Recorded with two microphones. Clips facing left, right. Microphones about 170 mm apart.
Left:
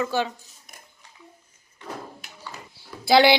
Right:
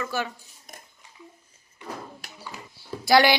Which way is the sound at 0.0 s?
20° left (ahead or behind).